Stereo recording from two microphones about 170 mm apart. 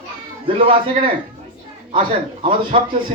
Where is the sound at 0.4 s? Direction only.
30° right (ahead or behind).